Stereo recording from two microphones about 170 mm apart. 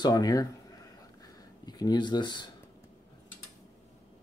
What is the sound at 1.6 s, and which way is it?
Speech, 25° left (ahead or behind).